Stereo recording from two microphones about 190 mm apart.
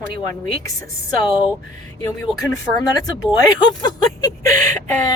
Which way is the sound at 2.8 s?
20° left (ahead or behind).